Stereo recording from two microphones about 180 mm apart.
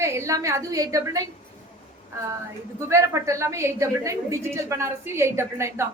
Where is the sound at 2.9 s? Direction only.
15° right (ahead or behind).